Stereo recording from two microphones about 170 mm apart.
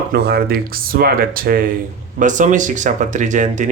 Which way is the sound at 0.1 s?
65° right (ahead or behind).